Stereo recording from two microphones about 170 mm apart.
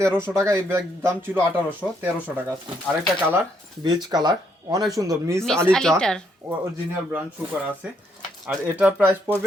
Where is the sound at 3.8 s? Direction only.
25° right (ahead or behind).